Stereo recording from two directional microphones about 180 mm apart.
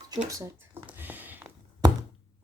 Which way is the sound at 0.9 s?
10° right (ahead or behind).